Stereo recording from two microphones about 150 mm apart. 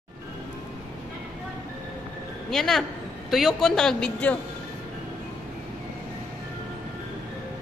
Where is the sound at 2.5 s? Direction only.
Centre (ahead or behind).